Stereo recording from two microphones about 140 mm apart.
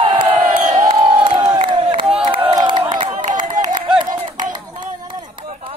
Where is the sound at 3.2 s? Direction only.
70° right (ahead or behind).